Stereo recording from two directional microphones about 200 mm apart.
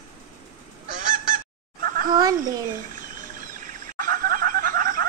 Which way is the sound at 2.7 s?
45° right (ahead or behind).